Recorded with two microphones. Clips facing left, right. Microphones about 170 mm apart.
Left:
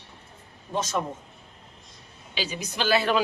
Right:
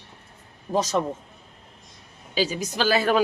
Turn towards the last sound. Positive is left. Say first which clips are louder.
# right 2 dB
turn(degrees=-45)  # may be behind; listen again after turning